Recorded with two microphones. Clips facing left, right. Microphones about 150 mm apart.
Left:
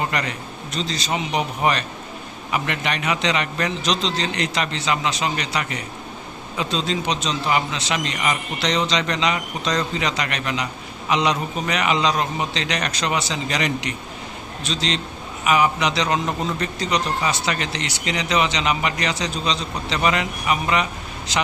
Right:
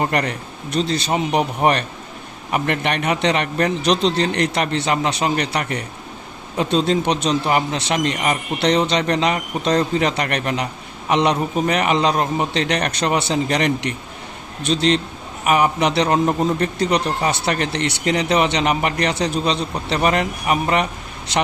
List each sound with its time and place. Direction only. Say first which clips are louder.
0.0 s a man's voice: right 4 dB; 55° right (ahead or behind)